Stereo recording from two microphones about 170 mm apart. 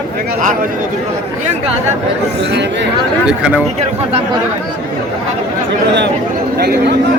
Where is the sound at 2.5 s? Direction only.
90° right.